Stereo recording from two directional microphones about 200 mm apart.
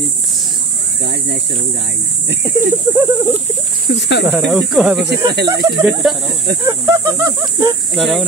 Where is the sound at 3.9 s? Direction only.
60° left (ahead or behind).